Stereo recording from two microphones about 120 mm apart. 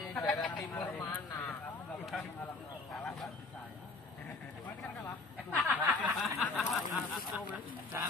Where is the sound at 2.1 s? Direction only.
Centre (ahead or behind).